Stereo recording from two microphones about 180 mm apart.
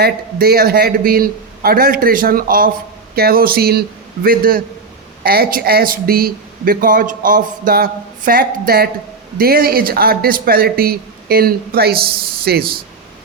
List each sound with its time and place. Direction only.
0.0 s speech: 55° right (ahead or behind)